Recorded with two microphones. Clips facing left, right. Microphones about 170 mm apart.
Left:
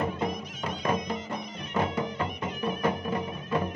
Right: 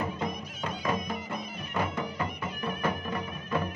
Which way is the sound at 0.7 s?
20° left (ahead or behind).